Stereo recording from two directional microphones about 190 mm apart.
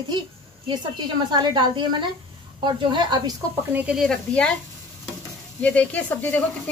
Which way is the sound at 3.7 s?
10° right (ahead or behind).